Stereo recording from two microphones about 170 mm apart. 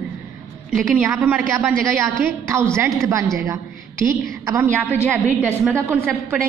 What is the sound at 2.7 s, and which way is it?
Speech, 15° right (ahead or behind).